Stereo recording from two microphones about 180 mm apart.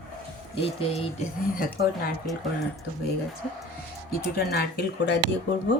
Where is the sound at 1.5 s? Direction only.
55° left (ahead or behind).